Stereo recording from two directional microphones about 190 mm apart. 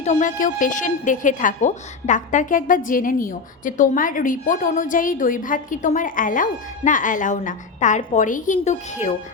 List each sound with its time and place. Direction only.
0.0 s a woman's voice: 40° left (ahead or behind)